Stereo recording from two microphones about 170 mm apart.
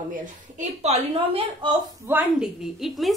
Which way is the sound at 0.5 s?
40° right (ahead or behind).